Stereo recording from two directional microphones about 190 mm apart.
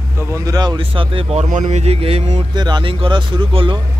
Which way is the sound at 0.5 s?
25° right (ahead or behind).